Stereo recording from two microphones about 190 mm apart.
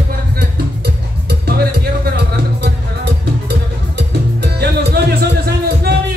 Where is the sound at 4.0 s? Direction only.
60° right (ahead or behind).